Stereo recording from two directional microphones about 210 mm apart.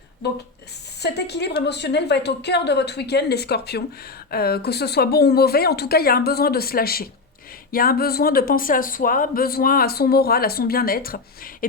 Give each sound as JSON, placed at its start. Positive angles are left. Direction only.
{"t": 1.0, "sound": "speech", "side_deg": 50}